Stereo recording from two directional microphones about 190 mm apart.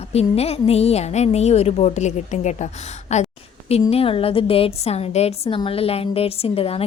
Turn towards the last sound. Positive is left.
turn(degrees=30)  # may be behind; listen again after turning